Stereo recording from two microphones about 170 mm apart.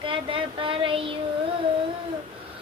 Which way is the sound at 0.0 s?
30° right (ahead or behind).